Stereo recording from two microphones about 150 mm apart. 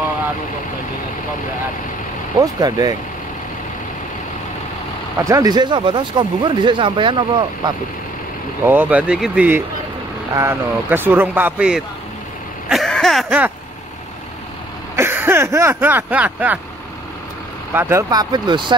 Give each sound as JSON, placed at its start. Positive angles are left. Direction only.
{"t": 2.4, "sound": "speech", "side_deg": -25}
{"t": 5.2, "sound": "speech", "side_deg": -20}
{"t": 8.6, "sound": "speech", "side_deg": -10}
{"t": 12.6, "sound": "a sound", "side_deg": 0}
{"t": 15.0, "sound": "speech", "side_deg": -15}
{"t": 17.7, "sound": "speech", "side_deg": -15}